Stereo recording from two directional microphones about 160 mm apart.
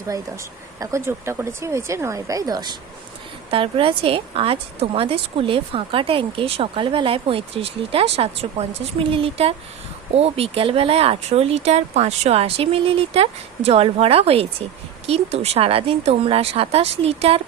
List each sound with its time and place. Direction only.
0.8 s a woman's voice: 20° right (ahead or behind); by 17.4 s 40° right (ahead or behind)